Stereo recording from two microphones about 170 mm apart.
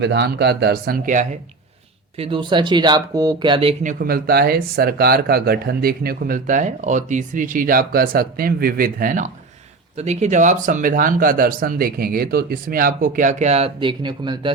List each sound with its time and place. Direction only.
0.0 s speech: 80° right; by 1.3 s 50° right (ahead or behind)
2.1 s speech: 30° right (ahead or behind)
3.8 s speech: 60° right (ahead or behind)
10.0 s speech: 40° right (ahead or behind)